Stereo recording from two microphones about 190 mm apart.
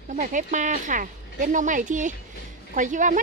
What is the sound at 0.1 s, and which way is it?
A woman's voice, 40° right (ahead or behind).